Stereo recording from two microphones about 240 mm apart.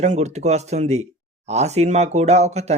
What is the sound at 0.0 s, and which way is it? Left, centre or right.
Speech, right.